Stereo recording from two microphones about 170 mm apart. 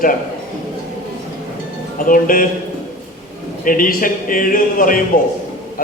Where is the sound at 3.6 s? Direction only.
55° left (ahead or behind).